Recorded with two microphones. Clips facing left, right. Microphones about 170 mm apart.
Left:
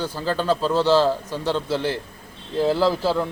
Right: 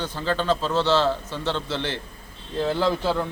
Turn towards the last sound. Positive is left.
turn(degrees=5)  # may be behind; listen again after turning